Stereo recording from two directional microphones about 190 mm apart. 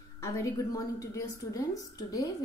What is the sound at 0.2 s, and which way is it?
A woman's voice, 15° left (ahead or behind).